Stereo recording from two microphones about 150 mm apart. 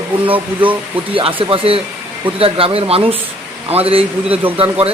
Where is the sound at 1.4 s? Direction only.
40° right (ahead or behind).